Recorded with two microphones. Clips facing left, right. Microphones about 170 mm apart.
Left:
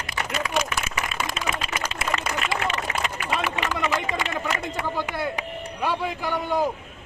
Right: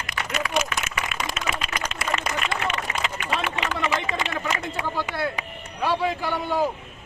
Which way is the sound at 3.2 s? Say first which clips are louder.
Left 1 dB; 15° left (ahead or behind).